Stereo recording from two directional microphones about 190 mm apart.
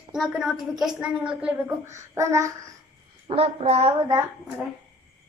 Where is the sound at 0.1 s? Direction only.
Centre (ahead or behind).